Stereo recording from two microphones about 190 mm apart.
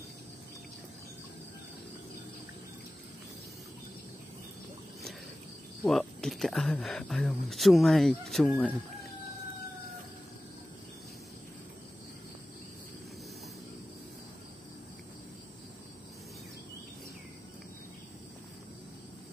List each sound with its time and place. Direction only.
5.9 s speech: centre (ahead or behind)